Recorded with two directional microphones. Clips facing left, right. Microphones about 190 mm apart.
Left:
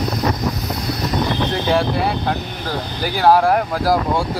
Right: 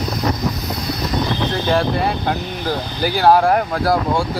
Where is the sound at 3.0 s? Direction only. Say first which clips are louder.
Right 1 dB; centre (ahead or behind).